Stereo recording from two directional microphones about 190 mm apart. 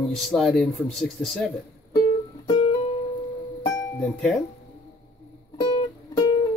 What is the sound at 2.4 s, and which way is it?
Music, 25° left (ahead or behind).